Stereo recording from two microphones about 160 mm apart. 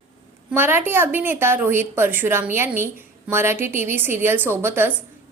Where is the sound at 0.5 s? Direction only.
15° right (ahead or behind).